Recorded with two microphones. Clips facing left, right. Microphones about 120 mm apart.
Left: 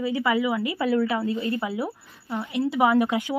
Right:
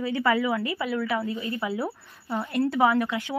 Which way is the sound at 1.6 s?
20° left (ahead or behind).